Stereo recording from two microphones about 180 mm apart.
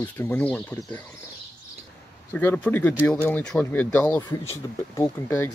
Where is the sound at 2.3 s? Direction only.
10° left (ahead or behind).